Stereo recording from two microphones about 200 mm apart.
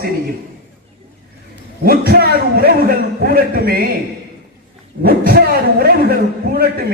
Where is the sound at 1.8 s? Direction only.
50° right (ahead or behind).